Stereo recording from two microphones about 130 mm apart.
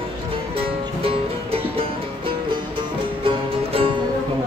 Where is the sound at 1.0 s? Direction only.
45° right (ahead or behind).